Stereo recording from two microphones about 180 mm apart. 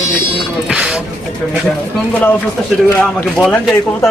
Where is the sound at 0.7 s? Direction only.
5° right (ahead or behind).